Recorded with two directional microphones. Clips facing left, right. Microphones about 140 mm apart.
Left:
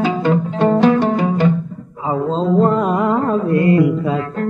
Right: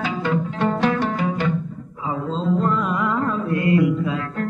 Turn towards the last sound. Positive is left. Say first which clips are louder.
# left 5 dB
turn(degrees=35)  # may be behind; listen again after turning